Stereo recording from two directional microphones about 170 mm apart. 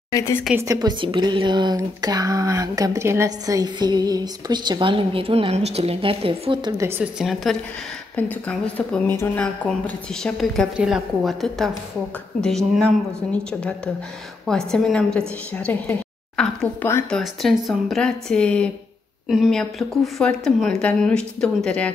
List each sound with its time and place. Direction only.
0.1 s a woman's voice: 15° left (ahead or behind)
0.6 s speech: 20° right (ahead or behind)
6.8 s a woman's voice: 5° right (ahead or behind)